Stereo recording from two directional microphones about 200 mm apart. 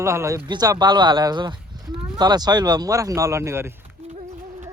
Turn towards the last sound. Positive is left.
turn(degrees=-15)  # may be behind; listen again after turning